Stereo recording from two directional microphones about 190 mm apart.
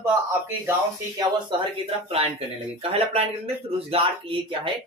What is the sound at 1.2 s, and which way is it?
Speech, 25° right (ahead or behind).